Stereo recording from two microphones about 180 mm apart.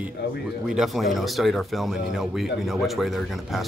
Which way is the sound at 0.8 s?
Centre (ahead or behind).